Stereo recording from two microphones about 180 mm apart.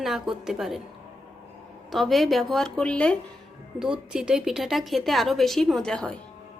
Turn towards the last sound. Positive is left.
turn(degrees=5)  # may be behind; listen again after turning